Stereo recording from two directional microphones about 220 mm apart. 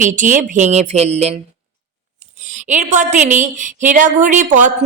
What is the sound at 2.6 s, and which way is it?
A woman's voice, 35° right (ahead or behind).